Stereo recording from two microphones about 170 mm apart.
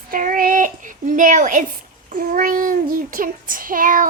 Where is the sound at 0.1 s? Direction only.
55° right (ahead or behind).